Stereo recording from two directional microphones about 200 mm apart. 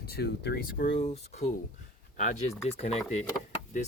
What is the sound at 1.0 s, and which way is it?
Speech, 35° left (ahead or behind).